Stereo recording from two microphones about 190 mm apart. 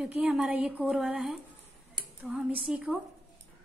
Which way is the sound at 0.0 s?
5° right (ahead or behind).